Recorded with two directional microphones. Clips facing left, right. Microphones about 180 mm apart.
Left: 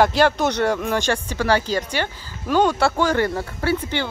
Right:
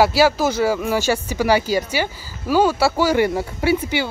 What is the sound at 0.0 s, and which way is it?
Speech, 5° right (ahead or behind).